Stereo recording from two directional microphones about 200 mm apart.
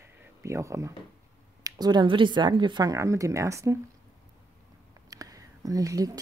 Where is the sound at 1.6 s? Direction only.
20° right (ahead or behind).